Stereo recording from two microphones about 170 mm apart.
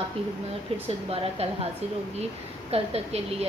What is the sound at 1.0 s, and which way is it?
Speech, 35° right (ahead or behind).